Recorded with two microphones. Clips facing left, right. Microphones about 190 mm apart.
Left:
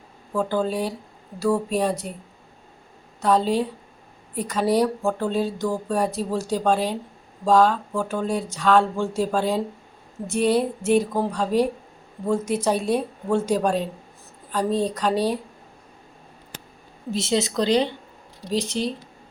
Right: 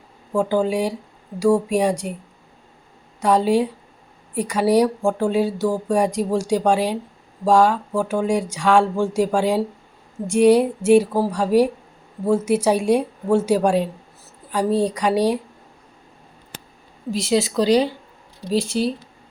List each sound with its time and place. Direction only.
0.3 s speech: 10° right (ahead or behind)
3.2 s speech: 10° right (ahead or behind)
17.2 s speech: 25° left (ahead or behind)
17.4 s speech: 10° right (ahead or behind)